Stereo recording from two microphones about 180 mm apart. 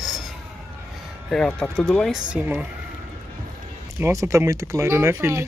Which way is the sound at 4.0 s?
15° right (ahead or behind).